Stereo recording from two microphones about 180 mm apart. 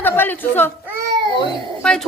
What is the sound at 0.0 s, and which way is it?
Speech, 10° left (ahead or behind).